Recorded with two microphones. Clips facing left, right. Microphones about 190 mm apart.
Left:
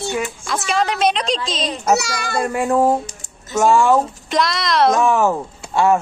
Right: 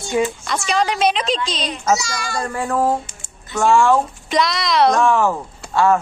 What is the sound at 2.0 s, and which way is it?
Speech, 60° left (ahead or behind).